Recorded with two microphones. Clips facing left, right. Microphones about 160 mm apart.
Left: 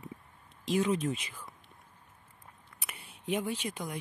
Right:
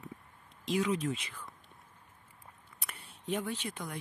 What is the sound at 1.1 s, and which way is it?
Speech, 15° left (ahead or behind).